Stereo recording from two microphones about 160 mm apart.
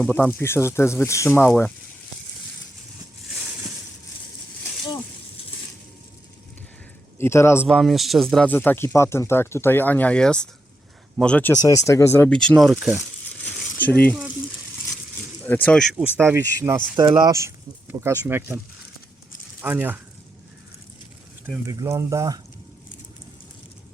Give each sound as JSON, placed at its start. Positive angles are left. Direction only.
{"t": 0.1, "sound": "speech", "side_deg": 10}
{"t": 7.2, "sound": "speech", "side_deg": 15}
{"t": 7.7, "sound": "speech", "side_deg": 0}
{"t": 11.5, "sound": "speech", "side_deg": 20}
{"t": 13.7, "sound": "speech", "side_deg": 10}
{"t": 15.4, "sound": "speech", "side_deg": 10}
{"t": 16.2, "sound": "speech", "side_deg": -15}
{"t": 17.0, "sound": "speech", "side_deg": -25}
{"t": 19.6, "sound": "speech", "side_deg": -10}
{"t": 21.7, "sound": "speech", "side_deg": -20}